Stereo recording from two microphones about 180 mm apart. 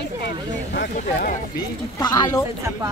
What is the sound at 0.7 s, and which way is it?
Speech, 55° left (ahead or behind).